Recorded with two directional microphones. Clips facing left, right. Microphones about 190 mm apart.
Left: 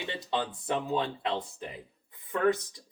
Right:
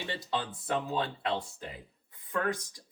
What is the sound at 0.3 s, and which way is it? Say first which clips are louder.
Speech: left 3 dB; 25° left (ahead or behind).